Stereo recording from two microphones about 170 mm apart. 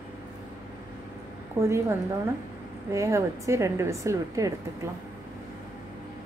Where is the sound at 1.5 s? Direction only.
15° right (ahead or behind).